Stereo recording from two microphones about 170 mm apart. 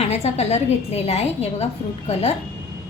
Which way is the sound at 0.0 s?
40° left (ahead or behind).